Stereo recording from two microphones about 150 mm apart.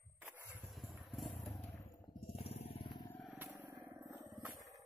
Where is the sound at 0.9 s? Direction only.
Centre (ahead or behind).